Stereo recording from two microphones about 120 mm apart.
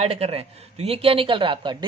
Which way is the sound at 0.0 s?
60° right (ahead or behind).